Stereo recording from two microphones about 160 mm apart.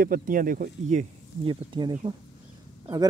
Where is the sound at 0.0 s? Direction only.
60° right (ahead or behind).